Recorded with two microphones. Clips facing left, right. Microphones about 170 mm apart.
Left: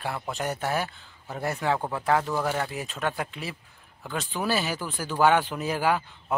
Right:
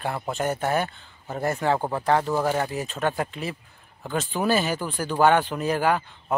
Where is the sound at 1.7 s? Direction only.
30° right (ahead or behind).